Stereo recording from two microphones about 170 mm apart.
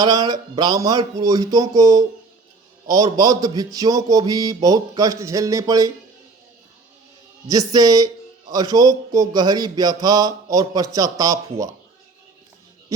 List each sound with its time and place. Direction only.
0.0 s a man's voice: 25° right (ahead or behind)
7.4 s a man's voice: 20° right (ahead or behind)